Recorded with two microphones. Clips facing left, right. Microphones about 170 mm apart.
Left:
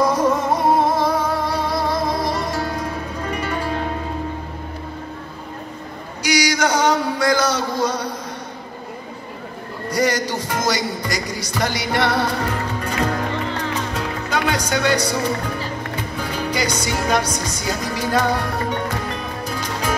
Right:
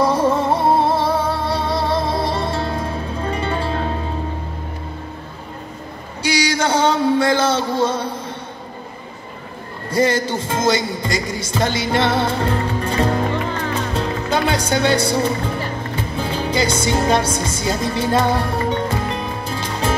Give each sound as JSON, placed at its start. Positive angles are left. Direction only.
{"t": 0.0, "sound": "music", "side_deg": -30}
{"t": 6.2, "sound": "a sound", "side_deg": -30}
{"t": 9.8, "sound": "music", "side_deg": -25}